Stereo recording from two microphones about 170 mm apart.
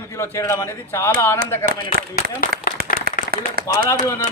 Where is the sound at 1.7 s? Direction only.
60° right (ahead or behind).